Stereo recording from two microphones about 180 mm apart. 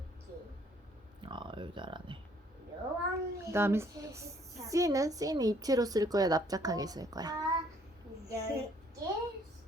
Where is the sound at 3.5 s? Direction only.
15° right (ahead or behind).